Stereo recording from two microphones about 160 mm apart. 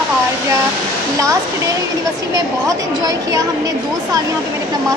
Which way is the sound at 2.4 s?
20° right (ahead or behind).